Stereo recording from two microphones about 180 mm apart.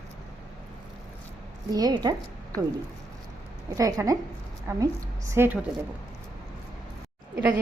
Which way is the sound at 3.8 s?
20° right (ahead or behind).